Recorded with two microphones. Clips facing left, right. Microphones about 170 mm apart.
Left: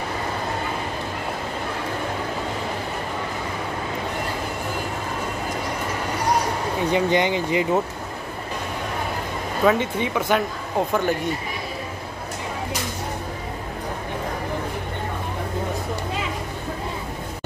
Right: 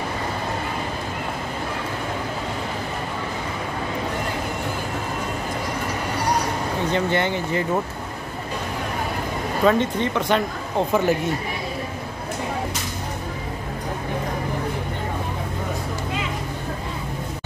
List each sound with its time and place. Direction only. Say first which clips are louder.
6.9 s speech: left 3 dB; 15° left (ahead or behind)
9.7 s speech: right 1 dB; 10° left (ahead or behind)
10.9 s speech: right 4 dB; 5° right (ahead or behind)